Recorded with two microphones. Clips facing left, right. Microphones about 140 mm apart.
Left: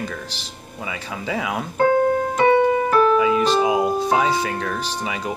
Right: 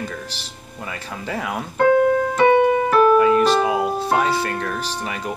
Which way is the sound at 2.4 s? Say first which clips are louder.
Right 1 dB; 15° right (ahead or behind).